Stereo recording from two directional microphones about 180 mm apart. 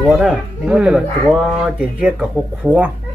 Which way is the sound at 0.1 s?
5° right (ahead or behind).